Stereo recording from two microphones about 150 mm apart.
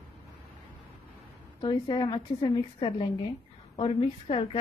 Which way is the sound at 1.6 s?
35° left (ahead or behind).